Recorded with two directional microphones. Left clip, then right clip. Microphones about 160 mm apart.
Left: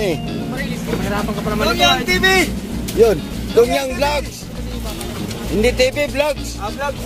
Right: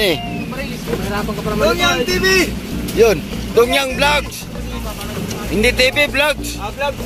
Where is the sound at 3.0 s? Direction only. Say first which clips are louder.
Right 1 dB; 10° left (ahead or behind).